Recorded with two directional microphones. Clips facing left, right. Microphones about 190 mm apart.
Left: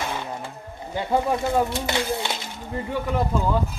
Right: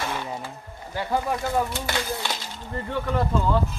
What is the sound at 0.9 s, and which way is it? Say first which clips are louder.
Speech: left 3 dB; 20° left (ahead or behind).